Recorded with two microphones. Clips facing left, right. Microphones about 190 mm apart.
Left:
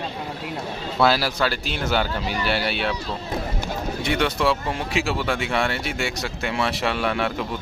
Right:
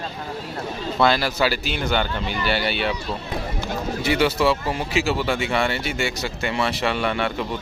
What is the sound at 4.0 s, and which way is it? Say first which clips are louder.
Speech: right 3 dB; 5° right (ahead or behind).